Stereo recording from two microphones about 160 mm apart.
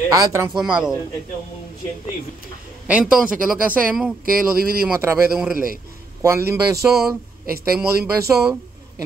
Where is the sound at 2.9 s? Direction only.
5° right (ahead or behind).